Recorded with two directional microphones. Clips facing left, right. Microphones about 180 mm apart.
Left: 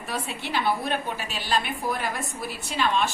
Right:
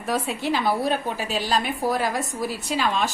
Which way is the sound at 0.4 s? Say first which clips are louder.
Right 1 dB; 40° right (ahead or behind).